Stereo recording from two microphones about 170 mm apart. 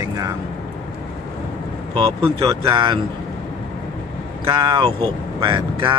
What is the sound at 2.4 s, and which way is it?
Speech, 30° right (ahead or behind).